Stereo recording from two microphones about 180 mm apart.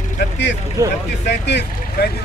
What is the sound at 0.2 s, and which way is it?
Speech, 75° left (ahead or behind).